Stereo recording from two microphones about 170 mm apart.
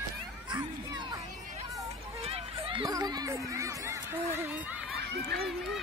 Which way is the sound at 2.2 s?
35° right (ahead or behind).